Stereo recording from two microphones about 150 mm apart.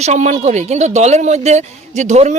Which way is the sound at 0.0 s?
50° right (ahead or behind).